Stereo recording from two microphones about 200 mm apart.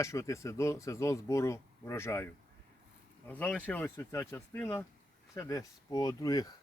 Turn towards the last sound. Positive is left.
turn(degrees=20)  # may be behind; listen again after turning